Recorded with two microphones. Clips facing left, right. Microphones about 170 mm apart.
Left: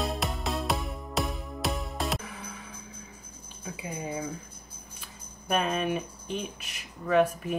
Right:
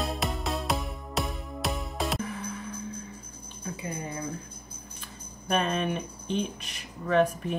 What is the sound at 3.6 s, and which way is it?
Speech, 10° left (ahead or behind).